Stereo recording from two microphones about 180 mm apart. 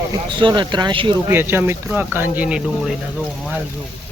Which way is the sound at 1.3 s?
10° right (ahead or behind).